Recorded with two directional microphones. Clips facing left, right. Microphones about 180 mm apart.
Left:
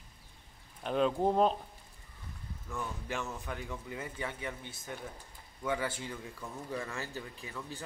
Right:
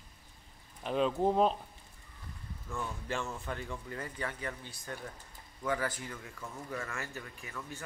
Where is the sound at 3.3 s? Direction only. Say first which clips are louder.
Right 1 dB; 5° left (ahead or behind).